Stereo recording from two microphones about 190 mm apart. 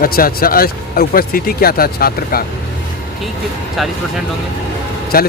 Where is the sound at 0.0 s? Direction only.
50° left (ahead or behind).